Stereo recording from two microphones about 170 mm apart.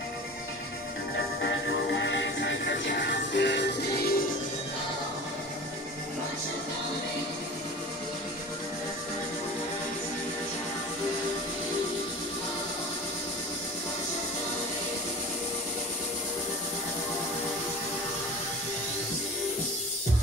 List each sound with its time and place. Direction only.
2.0 s music: 90° left; by 4.2 s 65° left (ahead or behind)